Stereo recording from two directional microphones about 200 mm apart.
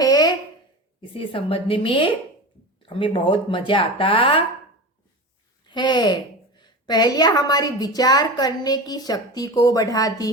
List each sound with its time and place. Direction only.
0.0 s a sound: 20° left (ahead or behind)
1.1 s a woman's voice: 25° left (ahead or behind)
5.6 s a woman's voice: 20° left (ahead or behind)